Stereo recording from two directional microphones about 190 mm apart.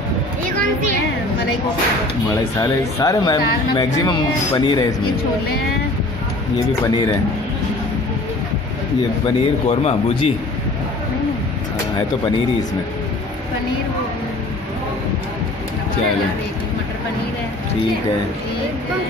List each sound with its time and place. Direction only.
2.2 s speech: 15° left (ahead or behind)
6.8 s speech: 20° left (ahead or behind)
9.7 s speech: 35° left (ahead or behind)